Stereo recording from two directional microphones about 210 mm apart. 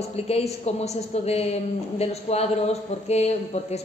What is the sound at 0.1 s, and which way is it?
A man's voice, 30° left (ahead or behind).